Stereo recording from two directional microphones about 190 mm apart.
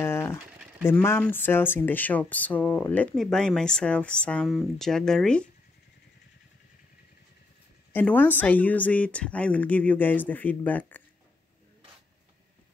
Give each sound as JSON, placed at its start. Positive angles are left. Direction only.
{"t": 0.0, "sound": "a sound", "side_deg": 15}
{"t": 0.8, "sound": "speech", "side_deg": 10}
{"t": 7.9, "sound": "speech", "side_deg": 10}